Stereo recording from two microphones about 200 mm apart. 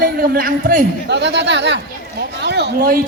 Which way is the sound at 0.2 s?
45° right (ahead or behind).